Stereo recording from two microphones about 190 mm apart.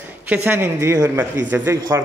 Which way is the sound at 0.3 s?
10° right (ahead or behind).